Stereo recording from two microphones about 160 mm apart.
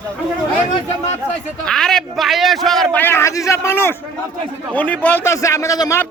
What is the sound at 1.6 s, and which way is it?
A man's voice, 5° left (ahead or behind).